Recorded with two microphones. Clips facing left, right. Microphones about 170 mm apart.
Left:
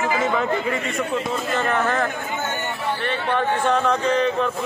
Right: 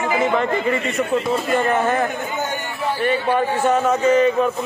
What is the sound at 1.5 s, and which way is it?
A man's voice, 15° right (ahead or behind).